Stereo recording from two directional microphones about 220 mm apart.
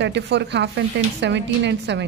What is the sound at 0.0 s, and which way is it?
A man's voice, 50° right (ahead or behind).